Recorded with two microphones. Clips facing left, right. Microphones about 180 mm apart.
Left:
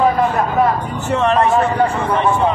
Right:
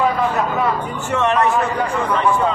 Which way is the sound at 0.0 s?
45° left (ahead or behind).